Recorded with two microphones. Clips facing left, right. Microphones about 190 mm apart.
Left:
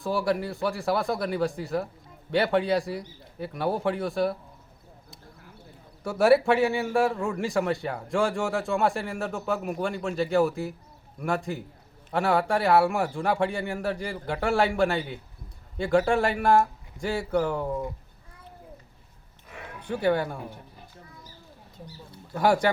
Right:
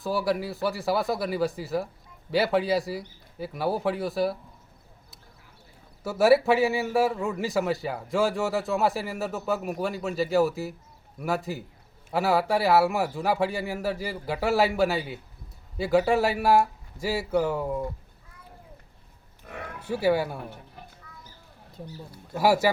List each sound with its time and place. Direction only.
0.0 s a man's voice: centre (ahead or behind)
6.0 s a man's voice: centre (ahead or behind)
19.5 s roaring cats: 55° right (ahead or behind)
19.9 s speech: 5° right (ahead or behind)
22.4 s a man's voice: 5° right (ahead or behind)